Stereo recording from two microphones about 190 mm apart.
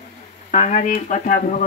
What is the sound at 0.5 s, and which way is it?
Speech, 35° left (ahead or behind).